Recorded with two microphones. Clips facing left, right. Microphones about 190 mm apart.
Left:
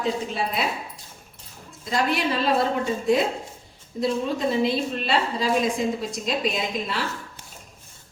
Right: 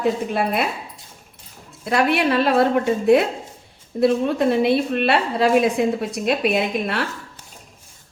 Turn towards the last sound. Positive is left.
turn(degrees=-60)  # may be behind; listen again after turning